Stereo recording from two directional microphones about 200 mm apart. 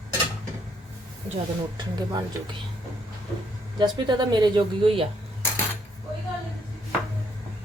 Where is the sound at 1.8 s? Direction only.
20° right (ahead or behind).